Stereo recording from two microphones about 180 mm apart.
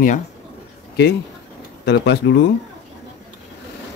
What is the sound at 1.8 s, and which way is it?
Speech, 65° left (ahead or behind).